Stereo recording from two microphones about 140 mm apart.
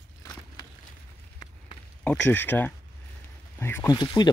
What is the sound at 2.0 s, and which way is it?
Speech, 10° left (ahead or behind).